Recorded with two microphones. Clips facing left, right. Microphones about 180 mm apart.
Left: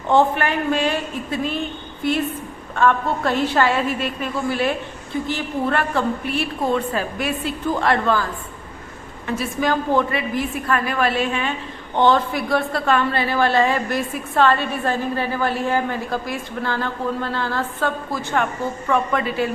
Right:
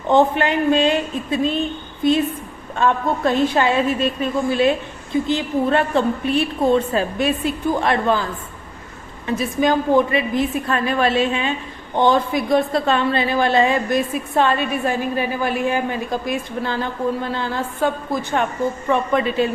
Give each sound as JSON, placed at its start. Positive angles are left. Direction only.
{"t": 0.1, "sound": "a woman's voice", "side_deg": -20}
{"t": 9.4, "sound": "a woman's voice", "side_deg": -20}